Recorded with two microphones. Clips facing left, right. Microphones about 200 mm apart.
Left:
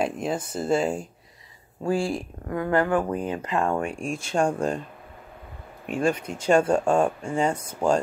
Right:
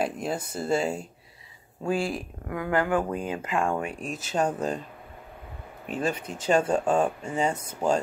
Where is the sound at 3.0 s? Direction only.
20° left (ahead or behind).